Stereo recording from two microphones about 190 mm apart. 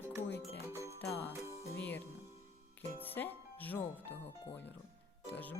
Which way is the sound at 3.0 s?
10° left (ahead or behind).